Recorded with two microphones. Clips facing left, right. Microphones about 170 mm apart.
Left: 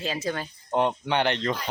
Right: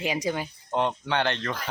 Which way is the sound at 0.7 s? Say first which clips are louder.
Left 2 dB; 15° left (ahead or behind).